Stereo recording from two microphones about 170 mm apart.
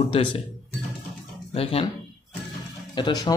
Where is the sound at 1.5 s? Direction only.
35° left (ahead or behind).